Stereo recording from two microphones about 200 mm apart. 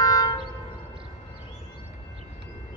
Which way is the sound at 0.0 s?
20° left (ahead or behind).